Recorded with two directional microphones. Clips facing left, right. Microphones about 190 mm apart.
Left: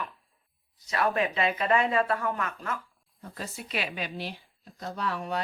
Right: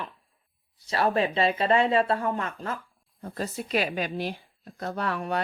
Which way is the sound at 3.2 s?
40° right (ahead or behind).